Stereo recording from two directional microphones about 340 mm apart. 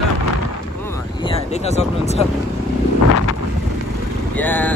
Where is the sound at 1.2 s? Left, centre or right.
Centre.